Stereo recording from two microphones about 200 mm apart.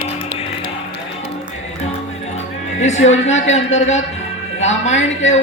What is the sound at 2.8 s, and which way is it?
A woman's voice, 35° left (ahead or behind).